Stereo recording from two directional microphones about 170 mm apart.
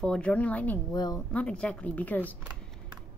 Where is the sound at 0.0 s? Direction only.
5° left (ahead or behind).